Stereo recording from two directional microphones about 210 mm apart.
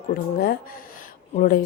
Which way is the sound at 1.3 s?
40° left (ahead or behind).